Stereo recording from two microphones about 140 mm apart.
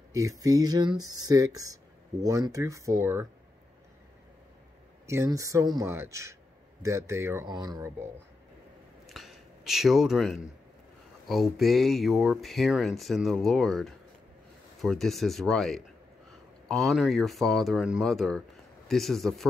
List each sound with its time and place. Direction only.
0.1 s speech: 25° right (ahead or behind)
5.0 s speech: 20° right (ahead or behind)
7.4 s speech: 30° right (ahead or behind)
9.0 s a sound: centre (ahead or behind)
11.2 s speech: centre (ahead or behind)